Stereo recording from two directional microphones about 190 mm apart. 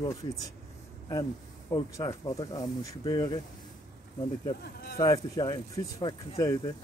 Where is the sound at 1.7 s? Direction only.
20° left (ahead or behind).